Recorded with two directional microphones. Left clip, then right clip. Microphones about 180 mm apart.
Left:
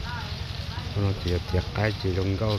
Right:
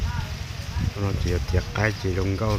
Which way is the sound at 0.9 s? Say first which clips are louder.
Right 1 dB; 5° right (ahead or behind).